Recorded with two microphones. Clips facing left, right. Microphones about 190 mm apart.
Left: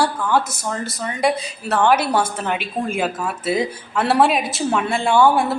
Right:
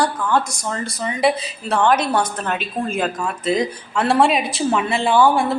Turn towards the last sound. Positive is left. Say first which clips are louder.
# even
turn(degrees=0)  # may be behind; listen again after turning